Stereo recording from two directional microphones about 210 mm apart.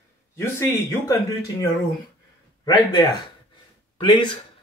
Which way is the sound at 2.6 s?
20° left (ahead or behind).